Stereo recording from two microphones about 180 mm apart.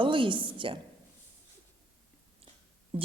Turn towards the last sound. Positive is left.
turn(degrees=-30)  # may be behind; listen again after turning